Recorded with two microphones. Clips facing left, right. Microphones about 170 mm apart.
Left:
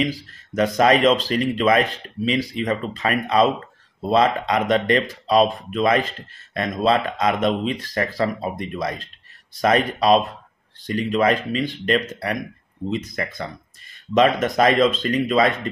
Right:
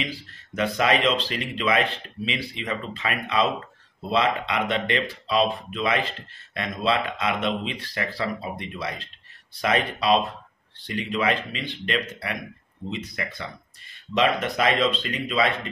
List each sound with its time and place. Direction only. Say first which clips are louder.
0.0 s speech: left 8 dB; 40° left (ahead or behind)